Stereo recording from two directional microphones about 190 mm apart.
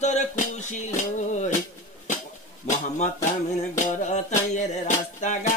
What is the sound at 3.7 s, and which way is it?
Music, 40° left (ahead or behind).